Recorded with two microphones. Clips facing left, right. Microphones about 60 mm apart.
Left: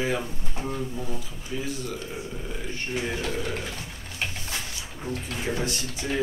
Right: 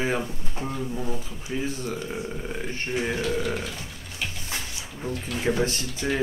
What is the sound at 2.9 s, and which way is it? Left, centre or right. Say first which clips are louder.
Speech: right 3 dB; right.